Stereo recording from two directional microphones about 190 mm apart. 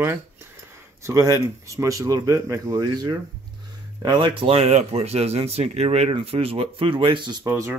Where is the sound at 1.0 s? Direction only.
15° right (ahead or behind).